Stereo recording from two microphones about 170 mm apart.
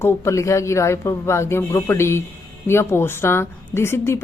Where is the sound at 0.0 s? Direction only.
15° left (ahead or behind).